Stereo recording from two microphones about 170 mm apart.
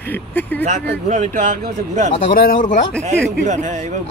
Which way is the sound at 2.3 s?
55° left (ahead or behind).